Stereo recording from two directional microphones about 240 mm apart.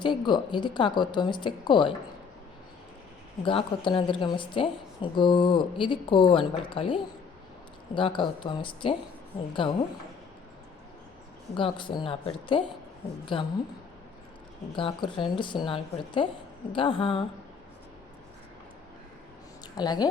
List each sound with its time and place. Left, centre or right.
0.0 s speech: centre
3.4 s speech: left
11.5 s speech: centre
14.8 s speech: left
19.6 s a woman's voice: centre